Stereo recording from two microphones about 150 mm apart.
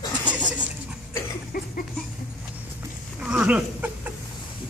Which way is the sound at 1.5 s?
70° left (ahead or behind).